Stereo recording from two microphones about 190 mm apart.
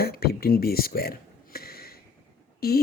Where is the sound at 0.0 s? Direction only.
55° left (ahead or behind).